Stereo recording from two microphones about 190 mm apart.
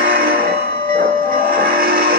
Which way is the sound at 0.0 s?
50° right (ahead or behind).